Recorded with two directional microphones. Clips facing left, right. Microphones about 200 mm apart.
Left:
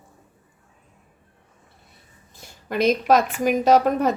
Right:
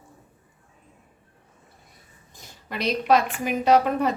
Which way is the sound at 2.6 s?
50° left (ahead or behind).